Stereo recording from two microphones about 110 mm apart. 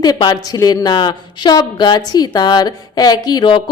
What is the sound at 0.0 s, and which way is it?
A woman's voice, 40° left (ahead or behind).